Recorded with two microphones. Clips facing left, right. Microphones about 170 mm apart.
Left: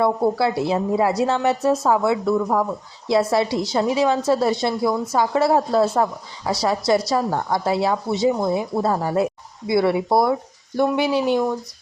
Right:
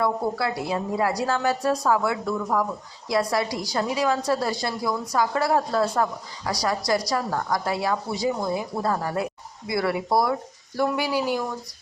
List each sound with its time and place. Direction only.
0.0 s a woman's voice: 30° left (ahead or behind)